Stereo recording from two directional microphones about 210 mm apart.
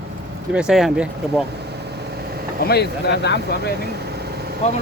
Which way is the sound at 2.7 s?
50° left (ahead or behind).